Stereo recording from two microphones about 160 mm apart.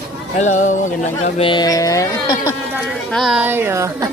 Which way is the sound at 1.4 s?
30° left (ahead or behind).